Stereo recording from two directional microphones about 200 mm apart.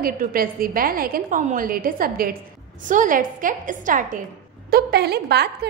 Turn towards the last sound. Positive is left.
turn(degrees=-55)  # may be behind; listen again after turning